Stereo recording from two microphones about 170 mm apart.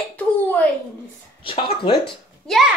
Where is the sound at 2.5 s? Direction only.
Centre (ahead or behind).